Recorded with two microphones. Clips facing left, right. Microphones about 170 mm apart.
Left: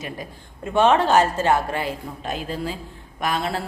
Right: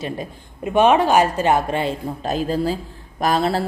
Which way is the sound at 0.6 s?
15° right (ahead or behind).